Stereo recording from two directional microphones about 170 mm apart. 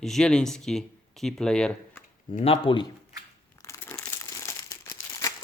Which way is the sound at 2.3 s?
35° left (ahead or behind).